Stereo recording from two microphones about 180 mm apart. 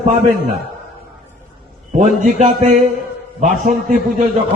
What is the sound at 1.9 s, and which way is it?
A man's voice, 45° right (ahead or behind).